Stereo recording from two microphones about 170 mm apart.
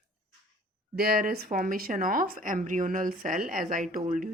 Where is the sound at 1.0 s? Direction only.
60° right (ahead or behind).